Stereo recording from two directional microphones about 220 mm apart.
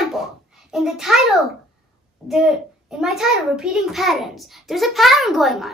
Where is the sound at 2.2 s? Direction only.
Centre (ahead or behind).